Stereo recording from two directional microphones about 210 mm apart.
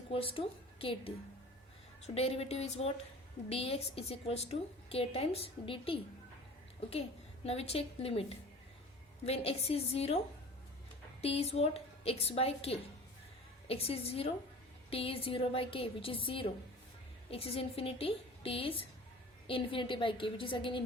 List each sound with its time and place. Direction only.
0.1 s a woman's voice: 25° left (ahead or behind)
7.4 s a woman's voice: 30° left (ahead or behind)
11.2 s a woman's voice: 30° left (ahead or behind)